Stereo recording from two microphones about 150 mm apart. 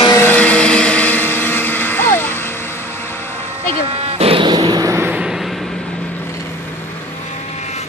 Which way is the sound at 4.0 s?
40° right (ahead or behind).